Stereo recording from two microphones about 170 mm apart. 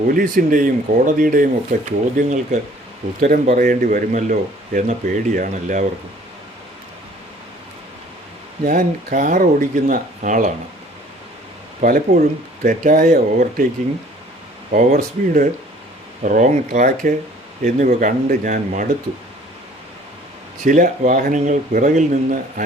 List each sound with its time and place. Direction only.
0.1 s speech: 55° right (ahead or behind)
8.6 s speech: 50° right (ahead or behind)
11.8 s speech: 55° right (ahead or behind)
14.7 s speech: 45° right (ahead or behind)
20.7 s speech: 50° right (ahead or behind)